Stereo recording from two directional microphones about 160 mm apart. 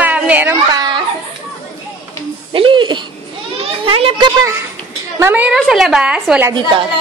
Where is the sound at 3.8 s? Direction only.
35° right (ahead or behind).